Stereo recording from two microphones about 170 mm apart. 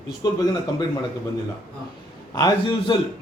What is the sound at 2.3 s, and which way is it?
Speech, 25° left (ahead or behind).